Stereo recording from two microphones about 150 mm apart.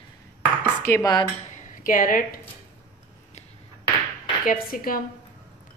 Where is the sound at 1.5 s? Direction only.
65° left (ahead or behind).